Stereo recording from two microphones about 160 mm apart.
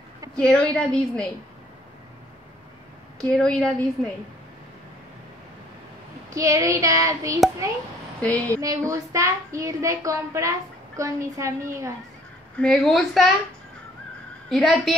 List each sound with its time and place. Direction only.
0.4 s a woman's voice: 5° left (ahead or behind)
3.2 s a woman's voice: 5° left (ahead or behind)
6.3 s a woman's voice: 20° right (ahead or behind)
8.2 s a woman's voice: 10° left (ahead or behind)
8.5 s a woman's voice: 20° right (ahead or behind)
12.5 s a woman's voice: 5° left (ahead or behind)
14.5 s a woman's voice: centre (ahead or behind)